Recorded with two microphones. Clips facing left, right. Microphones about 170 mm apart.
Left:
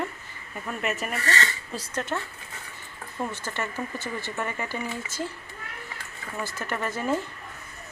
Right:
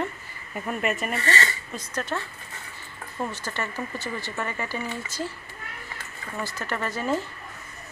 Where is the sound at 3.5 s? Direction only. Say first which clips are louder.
Even; 10° left (ahead or behind).